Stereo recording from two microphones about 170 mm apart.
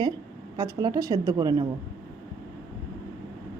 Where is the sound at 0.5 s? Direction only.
20° right (ahead or behind).